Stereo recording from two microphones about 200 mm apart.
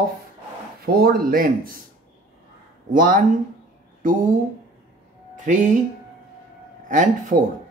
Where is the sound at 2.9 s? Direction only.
45° right (ahead or behind).